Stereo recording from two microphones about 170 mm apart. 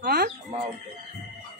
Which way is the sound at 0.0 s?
60° right (ahead or behind).